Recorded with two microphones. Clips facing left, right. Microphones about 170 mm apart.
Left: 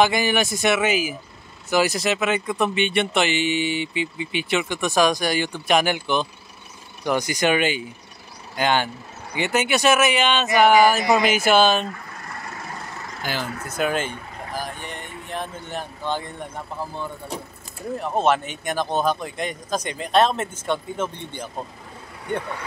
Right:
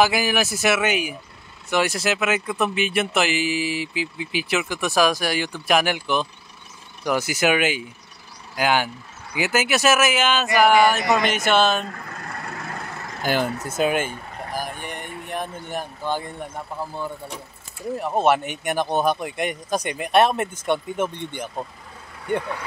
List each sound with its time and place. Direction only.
0.0 s speech: 5° right (ahead or behind)
13.2 s speech: 50° right (ahead or behind)
13.7 s speech: 25° right (ahead or behind)
13.9 s speech: 10° right (ahead or behind)
17.9 s speech: 10° right (ahead or behind)